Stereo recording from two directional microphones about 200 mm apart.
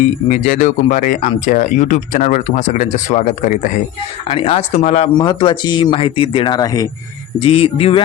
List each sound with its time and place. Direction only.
0.3 s speech: 40° left (ahead or behind)
4.3 s speech: 30° left (ahead or behind)
5.1 s speech: 25° left (ahead or behind)